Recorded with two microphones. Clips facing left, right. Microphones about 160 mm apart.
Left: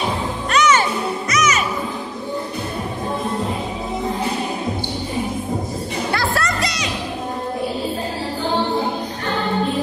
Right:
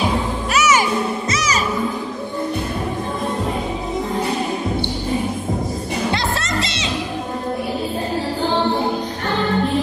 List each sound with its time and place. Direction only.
0.5 s music: 10° right (ahead or behind)
1.3 s music: 30° right (ahead or behind)
6.1 s music: 25° right (ahead or behind)